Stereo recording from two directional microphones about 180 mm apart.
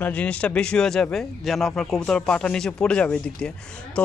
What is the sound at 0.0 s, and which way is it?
Speech, 5° left (ahead or behind).